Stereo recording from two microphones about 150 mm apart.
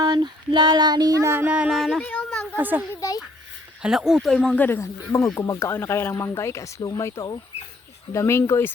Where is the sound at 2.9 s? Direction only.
20° left (ahead or behind).